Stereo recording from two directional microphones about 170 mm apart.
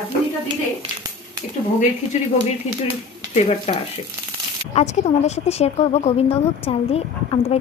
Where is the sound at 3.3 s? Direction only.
35° left (ahead or behind).